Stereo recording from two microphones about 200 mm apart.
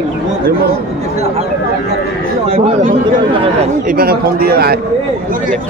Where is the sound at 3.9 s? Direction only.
50° right (ahead or behind).